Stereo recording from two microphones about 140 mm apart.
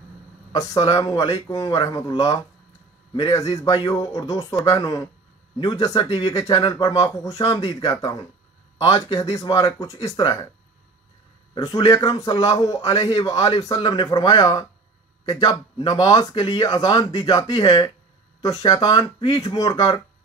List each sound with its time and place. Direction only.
0.5 s speech: 25° left (ahead or behind)
11.5 s speech: 30° left (ahead or behind)